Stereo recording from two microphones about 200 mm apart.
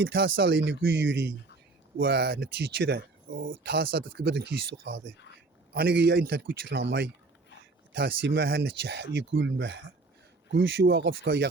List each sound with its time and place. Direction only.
0.0 s speech: 70° right (ahead or behind)
2.0 s speech: 55° right (ahead or behind)
5.7 s speech: 55° right (ahead or behind)